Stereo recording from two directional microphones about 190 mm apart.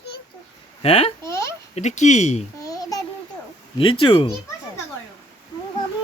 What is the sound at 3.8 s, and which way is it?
Speech, 25° left (ahead or behind).